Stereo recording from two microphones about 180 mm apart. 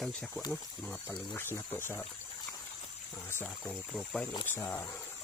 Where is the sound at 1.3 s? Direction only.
10° left (ahead or behind).